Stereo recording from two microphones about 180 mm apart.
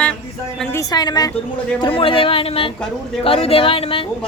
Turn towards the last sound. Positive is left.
turn(degrees=30)  # may be behind; listen again after turning